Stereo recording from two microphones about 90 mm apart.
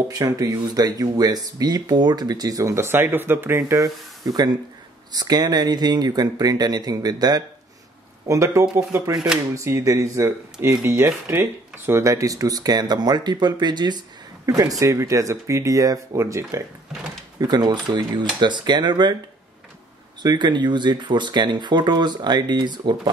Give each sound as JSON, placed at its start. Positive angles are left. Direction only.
{"t": 0.1, "sound": "speech", "side_deg": -40}
{"t": 2.7, "sound": "speech", "side_deg": -25}
{"t": 8.3, "sound": "speech", "side_deg": -35}
{"t": 17.4, "sound": "speech", "side_deg": -55}
{"t": 20.2, "sound": "speech", "side_deg": -55}